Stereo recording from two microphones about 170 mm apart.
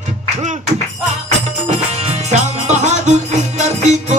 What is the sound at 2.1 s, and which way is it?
Music, 45° right (ahead or behind).